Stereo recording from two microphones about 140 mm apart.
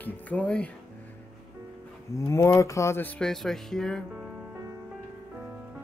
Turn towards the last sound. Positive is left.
turn(degrees=5)  # may be behind; listen again after turning